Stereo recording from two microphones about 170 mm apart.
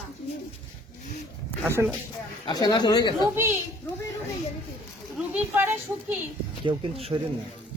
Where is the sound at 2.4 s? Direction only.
25° left (ahead or behind).